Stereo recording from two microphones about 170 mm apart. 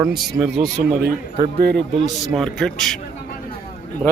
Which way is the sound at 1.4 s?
70° right (ahead or behind).